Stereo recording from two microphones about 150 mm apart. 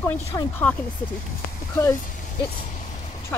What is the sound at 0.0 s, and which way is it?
Speech, 15° left (ahead or behind).